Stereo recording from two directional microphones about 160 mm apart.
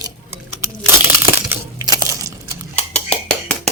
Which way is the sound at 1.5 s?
25° right (ahead or behind).